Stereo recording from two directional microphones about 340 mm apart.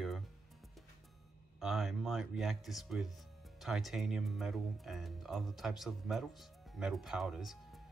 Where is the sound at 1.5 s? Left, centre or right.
Centre.